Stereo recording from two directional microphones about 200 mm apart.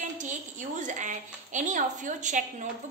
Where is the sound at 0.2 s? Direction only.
40° right (ahead or behind).